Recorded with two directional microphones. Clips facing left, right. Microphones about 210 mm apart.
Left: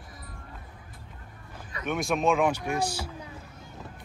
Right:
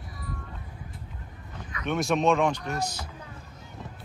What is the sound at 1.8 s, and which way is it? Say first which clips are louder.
Speech: right 2 dB; centre (ahead or behind).